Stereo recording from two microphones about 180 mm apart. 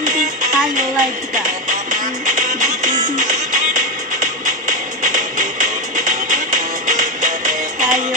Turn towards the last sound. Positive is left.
turn(degrees=-45)  # may be behind; listen again after turning